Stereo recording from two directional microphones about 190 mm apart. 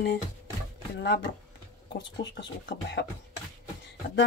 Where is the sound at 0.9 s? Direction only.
65° left (ahead or behind).